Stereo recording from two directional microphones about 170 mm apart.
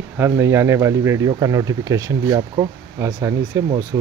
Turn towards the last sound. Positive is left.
turn(degrees=-20)  # may be behind; listen again after turning